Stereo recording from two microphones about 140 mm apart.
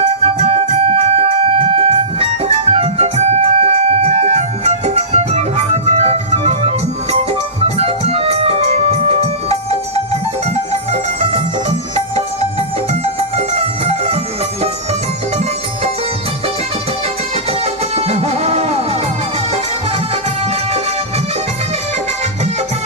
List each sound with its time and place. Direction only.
0.2 s organ: 50° right (ahead or behind)
7.8 s music: 45° right (ahead or behind)
17.9 s music: 45° right (ahead or behind)